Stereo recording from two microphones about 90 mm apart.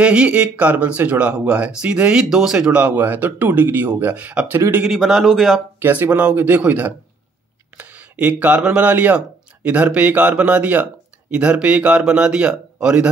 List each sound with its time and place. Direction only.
0.0 s speech: 10° right (ahead or behind)
4.8 s a man's voice: centre (ahead or behind)
5.8 s speech: 20° right (ahead or behind)
7.7 s a sound: 15° right (ahead or behind)
8.6 s speech: 15° right (ahead or behind)